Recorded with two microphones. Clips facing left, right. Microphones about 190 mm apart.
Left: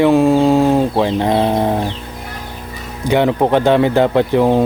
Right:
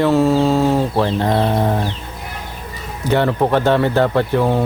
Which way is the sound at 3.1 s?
15° left (ahead or behind).